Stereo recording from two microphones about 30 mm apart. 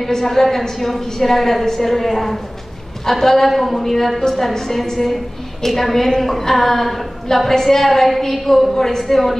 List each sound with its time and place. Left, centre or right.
0.0 s a woman's voice: centre